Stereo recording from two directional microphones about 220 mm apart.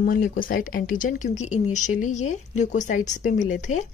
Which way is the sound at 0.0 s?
40° left (ahead or behind).